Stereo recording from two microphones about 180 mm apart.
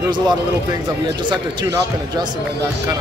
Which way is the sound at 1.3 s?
25° right (ahead or behind).